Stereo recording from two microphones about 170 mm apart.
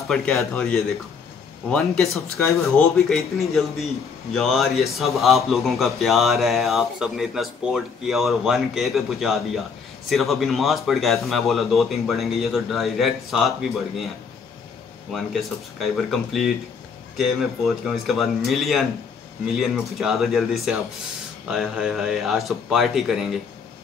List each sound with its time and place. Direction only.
0.1 s speech: 5° left (ahead or behind)
2.3 s speech: 15° left (ahead or behind)
2.6 s speech: centre (ahead or behind)
15.8 s speech: centre (ahead or behind)